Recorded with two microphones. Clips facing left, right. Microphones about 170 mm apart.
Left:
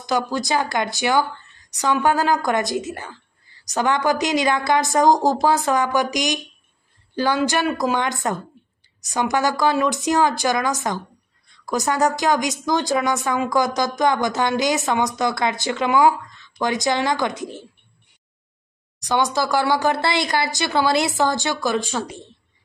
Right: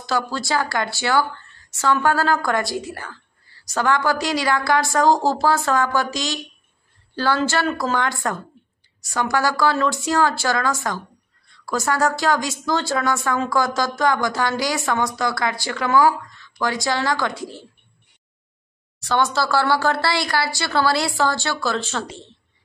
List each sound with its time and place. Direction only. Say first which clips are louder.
0.0 s a woman's voice: left 2 dB; 15° left (ahead or behind)
18.9 s speech: even; 15° left (ahead or behind)